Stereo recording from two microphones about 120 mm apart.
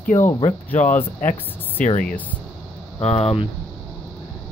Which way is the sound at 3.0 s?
55° left (ahead or behind).